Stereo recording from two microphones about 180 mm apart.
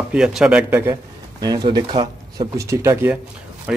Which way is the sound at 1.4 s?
20° right (ahead or behind).